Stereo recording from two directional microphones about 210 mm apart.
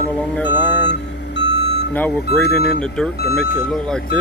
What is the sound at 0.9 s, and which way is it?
Vehicle, 55° left (ahead or behind).